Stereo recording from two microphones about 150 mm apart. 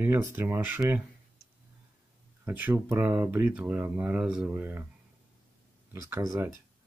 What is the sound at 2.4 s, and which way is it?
Speech, 10° right (ahead or behind).